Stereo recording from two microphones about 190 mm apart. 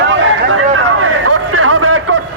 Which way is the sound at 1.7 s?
90° right.